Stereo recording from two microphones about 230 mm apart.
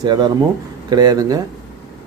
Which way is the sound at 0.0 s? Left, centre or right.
Centre.